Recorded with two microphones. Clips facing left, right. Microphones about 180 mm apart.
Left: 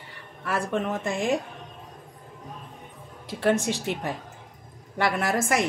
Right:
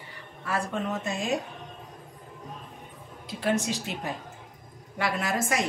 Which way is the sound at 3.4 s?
55° left (ahead or behind).